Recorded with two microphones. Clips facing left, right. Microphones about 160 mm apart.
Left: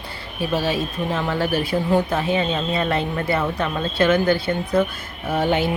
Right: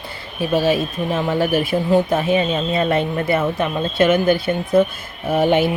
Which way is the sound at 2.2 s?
20° right (ahead or behind).